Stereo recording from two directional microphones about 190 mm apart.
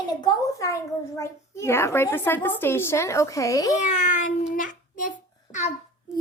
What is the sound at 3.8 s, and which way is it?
A child's voice, 40° left (ahead or behind).